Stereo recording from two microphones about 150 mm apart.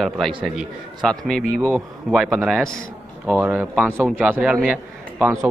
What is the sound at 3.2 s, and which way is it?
A man's voice, 10° right (ahead or behind).